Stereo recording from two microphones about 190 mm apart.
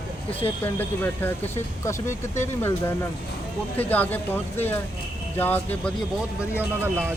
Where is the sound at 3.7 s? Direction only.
10° left (ahead or behind).